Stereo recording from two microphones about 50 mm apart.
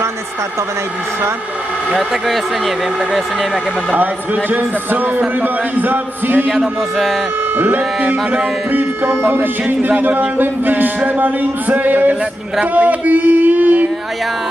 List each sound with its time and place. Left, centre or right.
2.0 s speech: centre
3.9 s speech: right
6.5 s music: centre
7.5 s speech: right
9.1 s speech: right
9.8 s speech: right
12.7 s a sound: right